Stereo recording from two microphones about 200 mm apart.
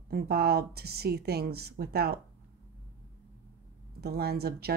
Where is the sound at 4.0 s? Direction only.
50° right (ahead or behind).